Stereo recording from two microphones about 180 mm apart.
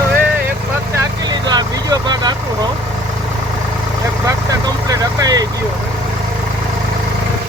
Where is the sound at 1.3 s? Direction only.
25° right (ahead or behind).